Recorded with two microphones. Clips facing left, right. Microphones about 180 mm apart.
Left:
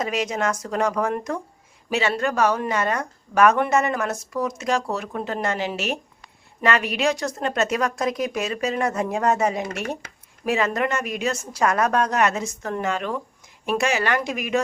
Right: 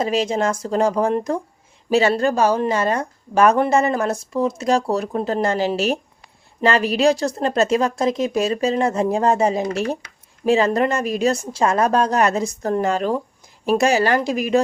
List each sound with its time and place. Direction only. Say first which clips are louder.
0.0 s speech: right 5 dB; 30° right (ahead or behind)